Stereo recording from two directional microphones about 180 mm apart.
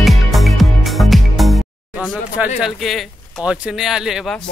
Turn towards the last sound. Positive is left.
turn(degrees=0)  # may be behind; listen again after turning